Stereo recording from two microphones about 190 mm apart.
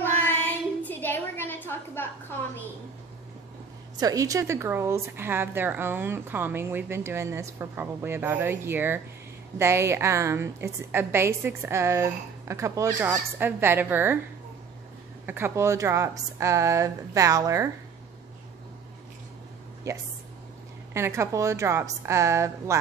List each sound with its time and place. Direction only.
0.8 s a sound: 10° left (ahead or behind)
3.9 s a woman's voice: 20° right (ahead or behind)
15.2 s a woman's voice: 10° right (ahead or behind)
19.9 s a woman's voice: 15° right (ahead or behind)